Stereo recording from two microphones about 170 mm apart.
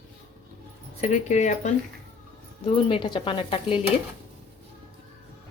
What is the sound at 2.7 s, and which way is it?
Speech, 30° left (ahead or behind).